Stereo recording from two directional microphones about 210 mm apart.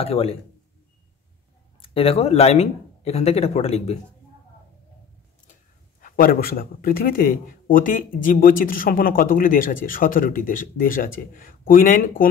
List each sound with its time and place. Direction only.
0.0 s speech: 30° left (ahead or behind)
1.8 s speech: 30° left (ahead or behind)
5.9 s speech: 40° left (ahead or behind)